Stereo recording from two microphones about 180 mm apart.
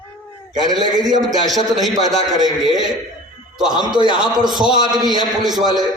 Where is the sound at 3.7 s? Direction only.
25° right (ahead or behind).